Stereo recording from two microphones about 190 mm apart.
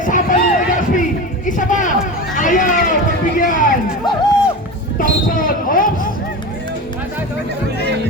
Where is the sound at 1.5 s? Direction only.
45° left (ahead or behind).